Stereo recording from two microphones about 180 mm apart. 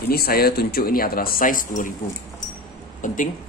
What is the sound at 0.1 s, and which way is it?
Speech, 60° left (ahead or behind).